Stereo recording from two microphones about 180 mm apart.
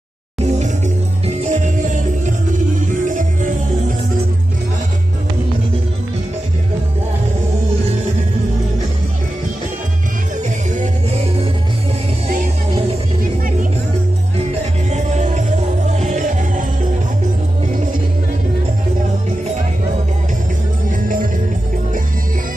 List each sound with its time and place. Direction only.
0.5 s music: 40° right (ahead or behind)
10.7 s music: 45° right (ahead or behind)
14.9 s music: 40° right (ahead or behind)
20.9 s music: 50° right (ahead or behind)